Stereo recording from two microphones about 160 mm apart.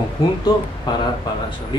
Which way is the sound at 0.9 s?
30° left (ahead or behind).